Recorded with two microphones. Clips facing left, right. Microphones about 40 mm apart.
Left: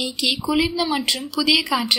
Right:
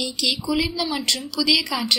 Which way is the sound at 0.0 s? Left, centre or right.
Centre.